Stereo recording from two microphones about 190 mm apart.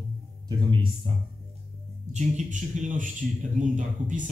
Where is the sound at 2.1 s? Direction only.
40° right (ahead or behind).